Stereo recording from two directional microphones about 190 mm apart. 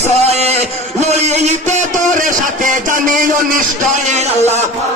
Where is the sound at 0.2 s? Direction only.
35° right (ahead or behind).